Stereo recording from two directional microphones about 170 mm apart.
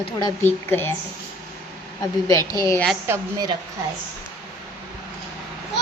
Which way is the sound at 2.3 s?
20° left (ahead or behind).